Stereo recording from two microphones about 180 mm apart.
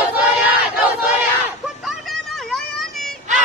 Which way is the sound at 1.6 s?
Centre (ahead or behind).